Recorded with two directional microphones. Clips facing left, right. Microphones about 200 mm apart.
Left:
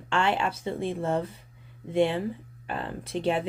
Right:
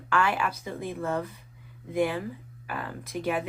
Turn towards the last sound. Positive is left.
turn(degrees=30)  # may be behind; listen again after turning